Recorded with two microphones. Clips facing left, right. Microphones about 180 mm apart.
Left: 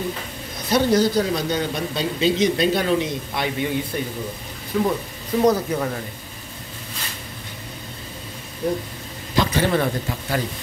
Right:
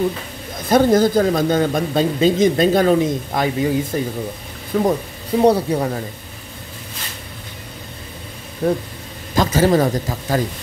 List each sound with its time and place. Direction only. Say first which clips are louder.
0.7 s a man's voice: right 5 dB; 50° right (ahead or behind)
5.4 s a man's voice: right 4 dB; 30° right (ahead or behind)
8.6 s speech: right 5 dB; 60° right (ahead or behind)
9.3 s a man's voice: right 5 dB; 45° right (ahead or behind)